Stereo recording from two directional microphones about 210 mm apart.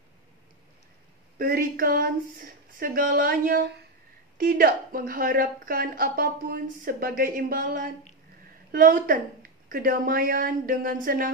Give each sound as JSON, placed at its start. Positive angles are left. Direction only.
{"t": 1.4, "sound": "a woman's voice", "side_deg": -45}